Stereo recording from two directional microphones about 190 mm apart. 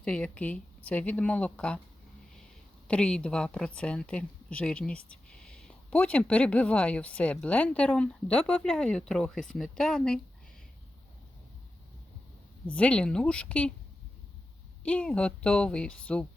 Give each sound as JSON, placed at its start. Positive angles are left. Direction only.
{"t": 0.0, "sound": "speech", "side_deg": 5}
{"t": 2.8, "sound": "a woman's voice", "side_deg": 5}
{"t": 12.7, "sound": "a woman's voice", "side_deg": 5}
{"t": 14.8, "sound": "a woman's voice", "side_deg": 5}